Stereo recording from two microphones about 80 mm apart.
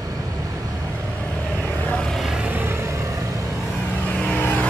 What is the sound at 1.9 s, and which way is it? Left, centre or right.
Vehicle, centre.